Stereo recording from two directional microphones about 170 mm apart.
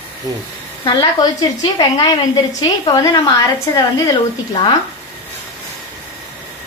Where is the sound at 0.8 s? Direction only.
25° left (ahead or behind).